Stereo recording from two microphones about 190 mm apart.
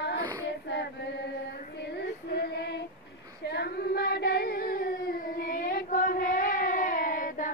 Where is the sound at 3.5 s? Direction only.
60° left (ahead or behind).